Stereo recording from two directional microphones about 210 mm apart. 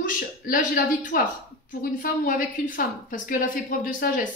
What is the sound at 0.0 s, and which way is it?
A woman's voice, 40° left (ahead or behind).